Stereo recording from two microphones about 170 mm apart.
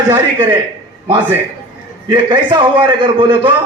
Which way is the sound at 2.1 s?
25° right (ahead or behind).